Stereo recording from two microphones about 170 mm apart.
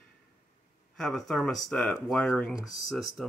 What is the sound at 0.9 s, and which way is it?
Speech, centre (ahead or behind).